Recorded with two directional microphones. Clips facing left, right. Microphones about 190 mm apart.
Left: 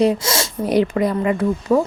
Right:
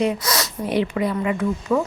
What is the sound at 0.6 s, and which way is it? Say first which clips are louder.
Speech: left 5 dB; 45° left (ahead or behind).